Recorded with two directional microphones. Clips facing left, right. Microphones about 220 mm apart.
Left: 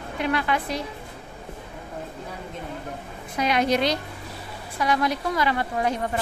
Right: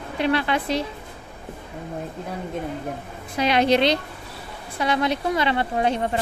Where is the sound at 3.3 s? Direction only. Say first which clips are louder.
Right 3 dB; 30° right (ahead or behind).